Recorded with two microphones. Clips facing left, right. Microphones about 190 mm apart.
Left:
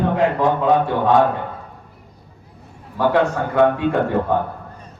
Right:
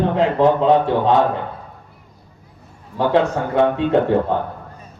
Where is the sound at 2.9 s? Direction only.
25° right (ahead or behind).